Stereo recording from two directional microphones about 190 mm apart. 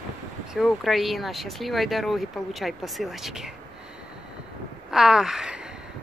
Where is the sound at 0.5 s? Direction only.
Centre (ahead or behind).